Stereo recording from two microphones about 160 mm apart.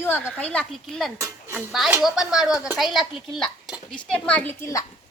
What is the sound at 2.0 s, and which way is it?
A child's voice, 5° right (ahead or behind).